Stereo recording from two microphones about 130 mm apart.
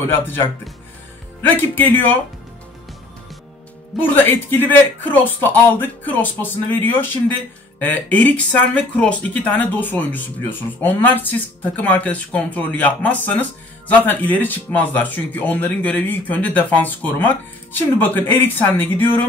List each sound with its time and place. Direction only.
0.0 s speech: 15° left (ahead or behind)
4.0 s speech: 15° left (ahead or behind)